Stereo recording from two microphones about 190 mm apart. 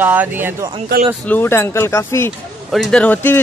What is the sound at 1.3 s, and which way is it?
Speech, 10° left (ahead or behind).